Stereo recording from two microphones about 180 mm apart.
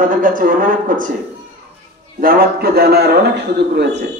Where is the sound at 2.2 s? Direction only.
55° right (ahead or behind).